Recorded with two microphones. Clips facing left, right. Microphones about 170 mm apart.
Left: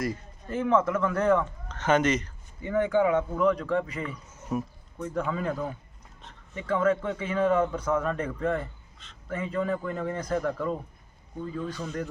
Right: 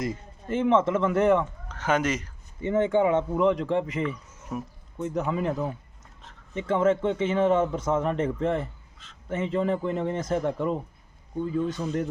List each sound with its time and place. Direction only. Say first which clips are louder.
0.0 s a man's voice: even; 25° right (ahead or behind)
1.6 s speech: left 2 dB; 10° right (ahead or behind)
2.6 s a man's voice: right 2 dB; 25° right (ahead or behind)
4.5 s speech: left 3 dB; centre (ahead or behind)
4.9 s a man's voice: right 3 dB; 20° right (ahead or behind)